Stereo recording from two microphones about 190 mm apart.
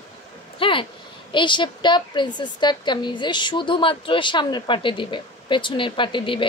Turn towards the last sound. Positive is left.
turn(degrees=25)  # may be behind; listen again after turning